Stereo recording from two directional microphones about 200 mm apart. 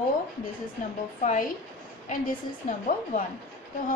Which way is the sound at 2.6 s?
40° left (ahead or behind).